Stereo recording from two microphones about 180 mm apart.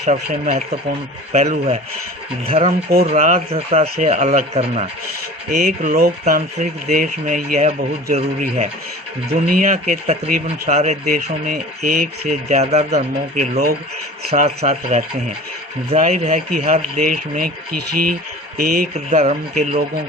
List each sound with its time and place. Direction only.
0.0 s speech: 40° right (ahead or behind)
5.5 s speech: 50° right (ahead or behind)
18.5 s speech: 55° right (ahead or behind)
18.9 s speech: 35° right (ahead or behind)